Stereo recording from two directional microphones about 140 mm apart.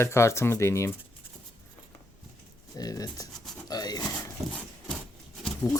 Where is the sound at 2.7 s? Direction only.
25° left (ahead or behind).